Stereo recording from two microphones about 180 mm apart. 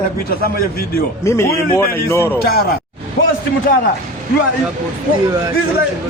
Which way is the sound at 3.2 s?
60° left (ahead or behind).